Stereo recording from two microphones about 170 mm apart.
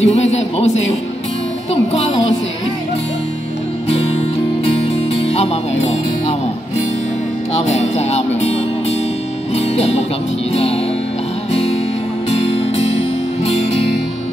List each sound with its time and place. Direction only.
0.0 s speech: 40° left (ahead or behind)
5.3 s speech: 40° left (ahead or behind)
9.8 s music: 40° left (ahead or behind)